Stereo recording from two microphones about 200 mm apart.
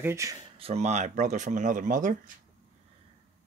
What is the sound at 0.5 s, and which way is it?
Speech, 30° right (ahead or behind).